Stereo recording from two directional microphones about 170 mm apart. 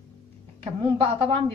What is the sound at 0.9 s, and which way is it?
Speech, 30° right (ahead or behind).